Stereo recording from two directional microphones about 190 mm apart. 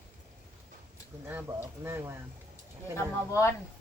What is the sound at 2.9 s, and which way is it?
Speech, 15° left (ahead or behind).